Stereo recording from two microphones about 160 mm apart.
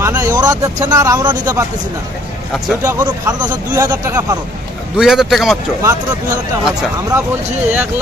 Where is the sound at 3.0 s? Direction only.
25° right (ahead or behind).